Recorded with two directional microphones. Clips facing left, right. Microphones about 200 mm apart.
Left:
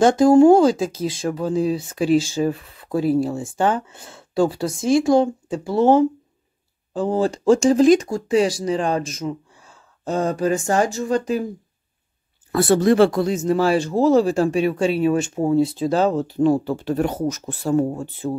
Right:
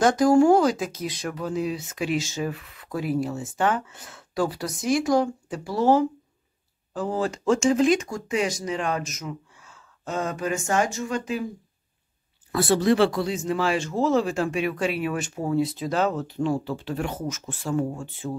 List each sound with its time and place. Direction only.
0.0 s speech: 25° left (ahead or behind)
12.5 s speech: 50° left (ahead or behind)